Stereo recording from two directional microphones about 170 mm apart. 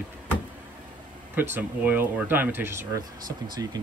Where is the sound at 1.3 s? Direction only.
10° right (ahead or behind).